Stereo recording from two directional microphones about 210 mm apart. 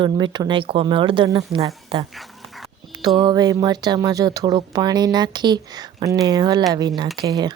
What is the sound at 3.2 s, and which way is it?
Speech, 20° right (ahead or behind).